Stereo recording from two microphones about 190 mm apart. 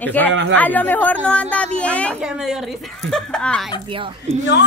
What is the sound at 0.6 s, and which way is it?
A woman's voice, 10° left (ahead or behind).